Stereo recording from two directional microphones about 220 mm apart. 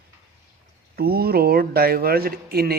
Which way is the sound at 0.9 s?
45° right (ahead or behind).